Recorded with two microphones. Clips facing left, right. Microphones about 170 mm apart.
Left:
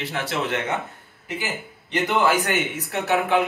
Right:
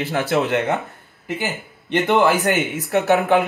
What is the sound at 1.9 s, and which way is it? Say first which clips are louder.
Speech: right 4 dB; 55° right (ahead or behind).